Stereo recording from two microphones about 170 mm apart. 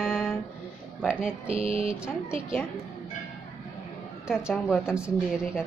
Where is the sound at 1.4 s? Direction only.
35° right (ahead or behind).